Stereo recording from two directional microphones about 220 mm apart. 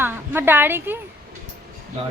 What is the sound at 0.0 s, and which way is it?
Speech, 10° right (ahead or behind).